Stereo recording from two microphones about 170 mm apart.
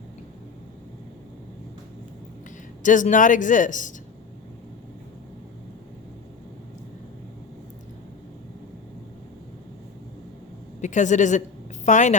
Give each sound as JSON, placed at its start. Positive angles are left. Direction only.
{"t": 2.8, "sound": "speech", "side_deg": 50}
{"t": 10.8, "sound": "a woman's voice", "side_deg": 45}